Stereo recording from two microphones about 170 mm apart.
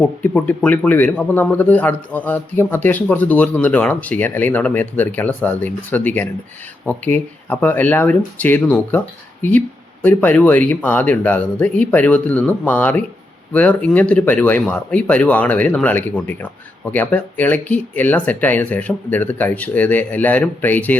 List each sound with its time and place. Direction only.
0.0 s speech: 10° left (ahead or behind)